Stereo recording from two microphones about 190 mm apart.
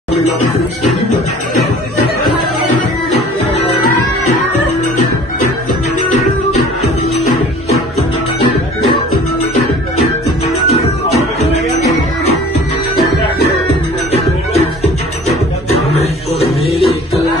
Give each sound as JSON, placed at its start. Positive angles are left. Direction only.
{"t": 15.2, "sound": "music", "side_deg": 35}